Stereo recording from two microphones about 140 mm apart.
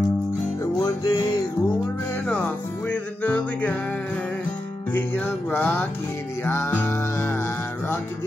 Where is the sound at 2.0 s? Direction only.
15° left (ahead or behind).